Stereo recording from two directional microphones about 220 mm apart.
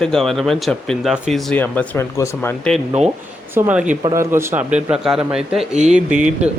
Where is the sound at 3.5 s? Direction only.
10° right (ahead or behind).